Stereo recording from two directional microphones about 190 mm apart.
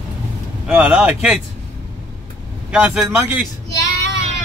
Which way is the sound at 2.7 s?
5° right (ahead or behind).